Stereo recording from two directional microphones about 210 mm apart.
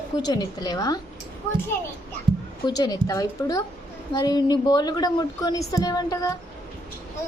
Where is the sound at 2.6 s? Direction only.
20° left (ahead or behind).